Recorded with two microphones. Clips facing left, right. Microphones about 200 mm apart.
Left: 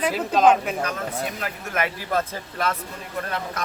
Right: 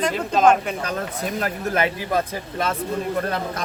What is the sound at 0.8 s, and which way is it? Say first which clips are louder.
Speech: right 1 dB; 40° right (ahead or behind).